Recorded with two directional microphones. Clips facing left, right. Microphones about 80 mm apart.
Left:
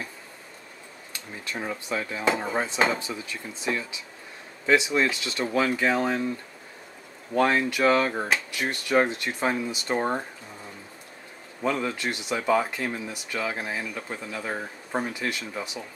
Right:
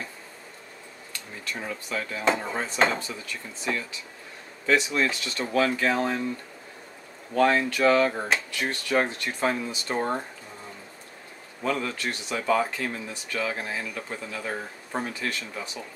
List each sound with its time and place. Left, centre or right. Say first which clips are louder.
1.4 s speech: left 2 dB; centre
7.3 s speech: right 1 dB; centre
11.8 s speech: left 2 dB; centre